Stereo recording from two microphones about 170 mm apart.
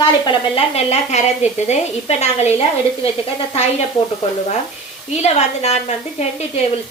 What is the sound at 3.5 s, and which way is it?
Speech, 40° left (ahead or behind).